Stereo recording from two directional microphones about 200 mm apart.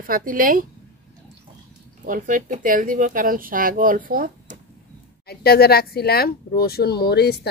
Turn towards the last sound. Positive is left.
turn(degrees=55)  # may be behind; listen again after turning